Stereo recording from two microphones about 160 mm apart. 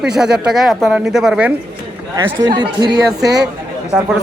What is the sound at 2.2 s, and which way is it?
Speech, 25° right (ahead or behind).